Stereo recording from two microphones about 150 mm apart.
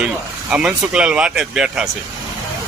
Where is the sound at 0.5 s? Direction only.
5° right (ahead or behind).